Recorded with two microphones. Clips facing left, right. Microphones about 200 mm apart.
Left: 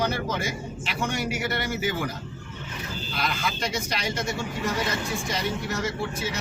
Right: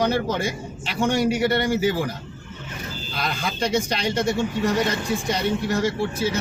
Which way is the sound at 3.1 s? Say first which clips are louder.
Right 2 dB; 30° right (ahead or behind).